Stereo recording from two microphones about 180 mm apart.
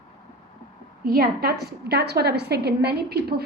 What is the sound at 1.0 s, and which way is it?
A woman's voice, 55° right (ahead or behind).